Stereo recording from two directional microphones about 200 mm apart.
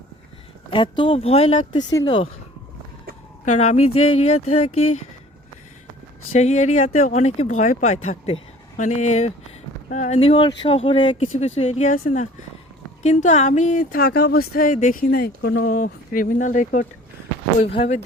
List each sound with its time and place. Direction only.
0.7 s speech: 25° left (ahead or behind)
3.4 s speech: 35° left (ahead or behind)
6.3 s speech: 35° left (ahead or behind)